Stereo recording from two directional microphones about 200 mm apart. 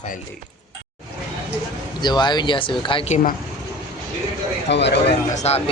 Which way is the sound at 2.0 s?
20° left (ahead or behind).